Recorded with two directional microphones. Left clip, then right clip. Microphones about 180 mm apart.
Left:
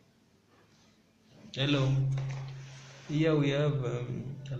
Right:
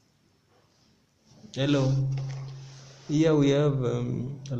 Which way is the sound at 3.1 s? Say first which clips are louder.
Right 6 dB; 75° right (ahead or behind).